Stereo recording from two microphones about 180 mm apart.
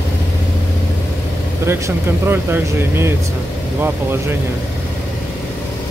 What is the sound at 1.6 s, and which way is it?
Speech, 15° right (ahead or behind).